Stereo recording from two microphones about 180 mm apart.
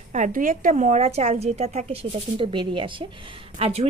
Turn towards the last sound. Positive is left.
turn(degrees=-35)  # may be behind; listen again after turning